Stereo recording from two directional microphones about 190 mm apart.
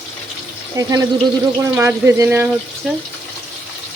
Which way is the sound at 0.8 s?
20° right (ahead or behind).